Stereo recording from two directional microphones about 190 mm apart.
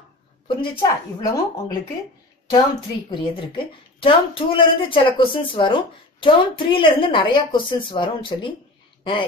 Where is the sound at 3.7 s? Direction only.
25° left (ahead or behind).